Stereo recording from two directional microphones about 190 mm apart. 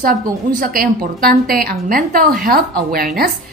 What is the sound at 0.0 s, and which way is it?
A woman's voice, 45° right (ahead or behind).